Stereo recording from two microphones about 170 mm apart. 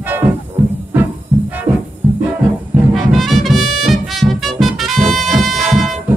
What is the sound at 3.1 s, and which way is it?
Music, centre (ahead or behind).